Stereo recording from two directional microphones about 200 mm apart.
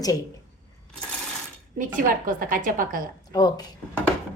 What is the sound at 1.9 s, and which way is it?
A woman's voice, 45° right (ahead or behind).